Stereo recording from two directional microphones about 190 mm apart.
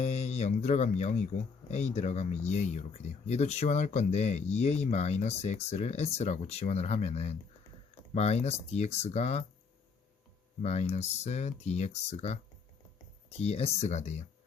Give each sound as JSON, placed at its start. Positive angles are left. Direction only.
{"t": 0.0, "sound": "speech", "side_deg": 35}
{"t": 10.6, "sound": "speech", "side_deg": 35}